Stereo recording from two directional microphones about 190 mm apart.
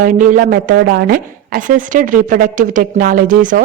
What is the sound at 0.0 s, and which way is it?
A woman's voice, 45° right (ahead or behind).